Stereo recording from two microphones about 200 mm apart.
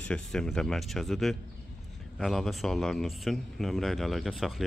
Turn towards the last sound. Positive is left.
turn(degrees=0)  # may be behind; listen again after turning